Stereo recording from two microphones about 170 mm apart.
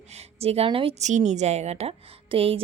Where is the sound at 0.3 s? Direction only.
35° right (ahead or behind).